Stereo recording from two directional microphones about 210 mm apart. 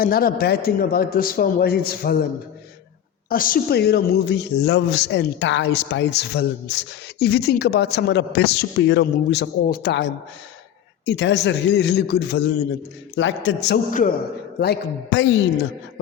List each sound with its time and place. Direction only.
0.0 s a woman's voice: 45° left (ahead or behind)
3.2 s a woman's voice: 40° left (ahead or behind); by 15.4 s 60° left (ahead or behind)